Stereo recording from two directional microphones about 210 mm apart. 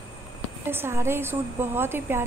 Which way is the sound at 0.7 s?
10° right (ahead or behind).